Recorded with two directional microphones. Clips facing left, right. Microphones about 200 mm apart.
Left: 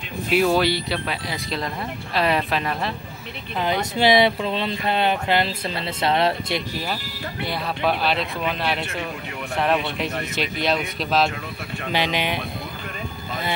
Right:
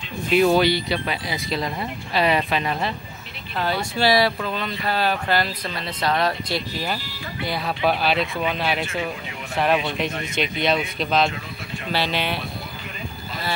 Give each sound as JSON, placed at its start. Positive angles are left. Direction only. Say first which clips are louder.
{"t": 0.3, "sound": "speech", "louder": "right 2 dB", "side_deg": 0}
{"t": 3.5, "sound": "speech", "louder": "left 1 dB", "side_deg": 20}
{"t": 7.4, "sound": "speech", "louder": "right 1 dB", "side_deg": 0}
{"t": 11.9, "sound": "speech", "louder": "left 1 dB", "side_deg": 15}